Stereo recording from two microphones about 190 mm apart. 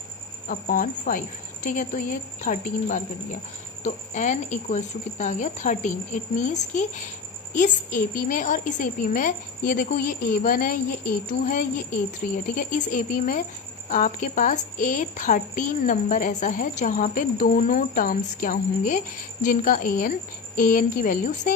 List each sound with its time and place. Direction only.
0.4 s a woman's voice: 45° left (ahead or behind)